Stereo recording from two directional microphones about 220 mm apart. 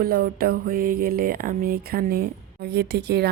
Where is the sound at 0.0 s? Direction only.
45° right (ahead or behind).